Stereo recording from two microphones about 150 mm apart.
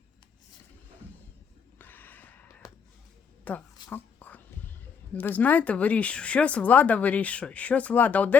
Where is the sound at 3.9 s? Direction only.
10° left (ahead or behind).